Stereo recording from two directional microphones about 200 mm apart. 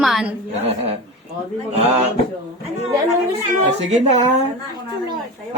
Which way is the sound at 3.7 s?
35° right (ahead or behind).